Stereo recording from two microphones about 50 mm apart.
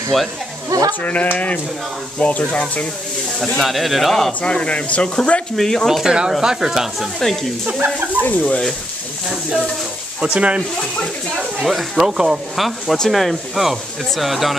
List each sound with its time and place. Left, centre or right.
0.1 s speech: centre
1.0 s speech: left
3.6 s speech: centre
4.3 s speech: left
5.6 s speech: centre
6.0 s speech: centre
7.6 s speech: right
8.2 s speech: left
10.2 s speech: right
11.6 s speech: centre
12.9 s speech: centre